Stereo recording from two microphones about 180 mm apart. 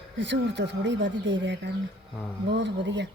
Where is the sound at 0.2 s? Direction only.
80° right.